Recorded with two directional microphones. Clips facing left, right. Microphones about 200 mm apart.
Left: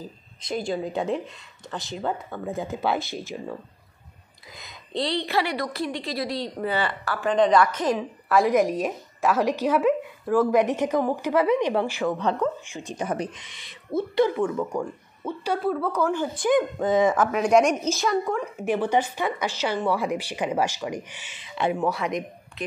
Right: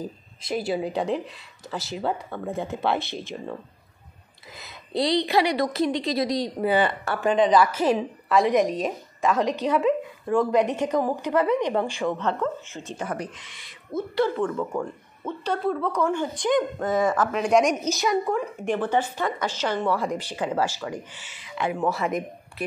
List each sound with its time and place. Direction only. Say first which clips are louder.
0.4 s speech: right 1 dB; 5° right (ahead or behind)
4.6 s speech: right 3 dB; 5° right (ahead or behind)
5.0 s a woman's voice: right 4 dB; 15° right (ahead or behind)
7.3 s speech: left 1 dB; centre (ahead or behind)
8.4 s speech: even; 5° left (ahead or behind)
16.8 s speech: left 3 dB; 20° left (ahead or behind)
17.1 s speech: left 1 dB; 5° left (ahead or behind); by 21.7 s 25° left (ahead or behind)
21.7 s speech: right 1 dB; centre (ahead or behind)